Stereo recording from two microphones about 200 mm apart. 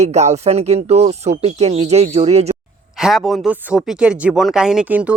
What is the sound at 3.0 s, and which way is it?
Speech, centre (ahead or behind).